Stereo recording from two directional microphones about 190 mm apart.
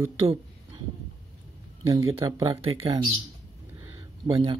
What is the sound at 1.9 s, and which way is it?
Speech, 20° right (ahead or behind).